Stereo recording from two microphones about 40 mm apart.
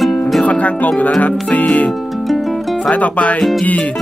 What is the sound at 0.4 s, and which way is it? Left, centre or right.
Speech, left.